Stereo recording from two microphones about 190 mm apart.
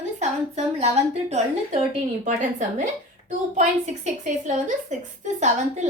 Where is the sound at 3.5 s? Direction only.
40° right (ahead or behind).